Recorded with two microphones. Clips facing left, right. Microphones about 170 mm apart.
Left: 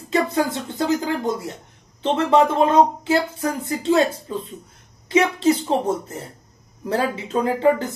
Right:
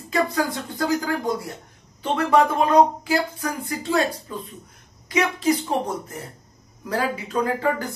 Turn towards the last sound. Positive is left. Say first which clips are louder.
# left 4 dB
turn(degrees=25)  # may be behind; listen again after turning